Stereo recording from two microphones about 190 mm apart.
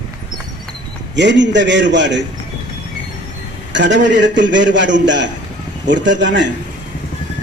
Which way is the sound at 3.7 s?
70° right (ahead or behind).